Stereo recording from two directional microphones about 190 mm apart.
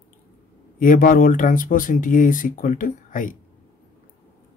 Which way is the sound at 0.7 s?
45° left (ahead or behind).